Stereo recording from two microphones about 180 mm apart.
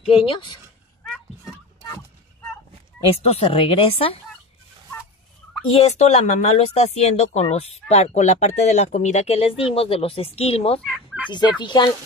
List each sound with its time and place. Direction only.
0.3 s fowl: 25° left (ahead or behind)
1.0 s vehicle: centre (ahead or behind)
3.1 s speech: 35° left (ahead or behind)
5.7 s speech: 35° left (ahead or behind)
10.8 s fowl: 5° right (ahead or behind)
11.2 s fowl: 25° left (ahead or behind)